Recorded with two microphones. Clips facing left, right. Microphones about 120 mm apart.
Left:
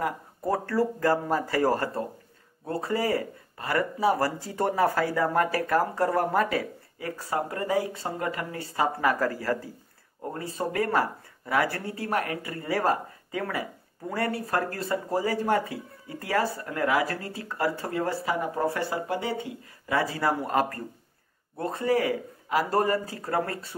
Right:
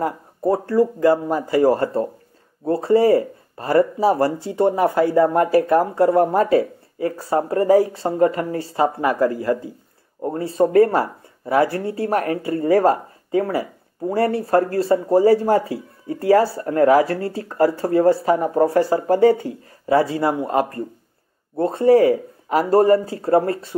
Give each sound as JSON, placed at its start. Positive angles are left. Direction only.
{"t": 0.0, "sound": "speech", "side_deg": -25}